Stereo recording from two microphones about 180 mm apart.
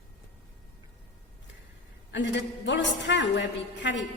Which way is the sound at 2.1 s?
85° left.